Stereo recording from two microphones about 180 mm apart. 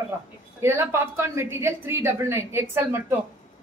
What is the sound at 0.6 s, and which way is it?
A woman's voice, 15° right (ahead or behind).